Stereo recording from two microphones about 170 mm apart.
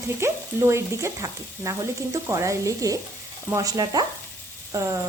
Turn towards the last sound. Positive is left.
turn(degrees=-20)  # may be behind; listen again after turning